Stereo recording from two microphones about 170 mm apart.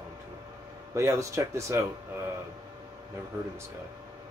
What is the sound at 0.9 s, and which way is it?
Speech, 15° right (ahead or behind).